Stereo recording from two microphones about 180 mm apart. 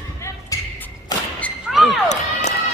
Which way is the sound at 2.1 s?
40° left (ahead or behind).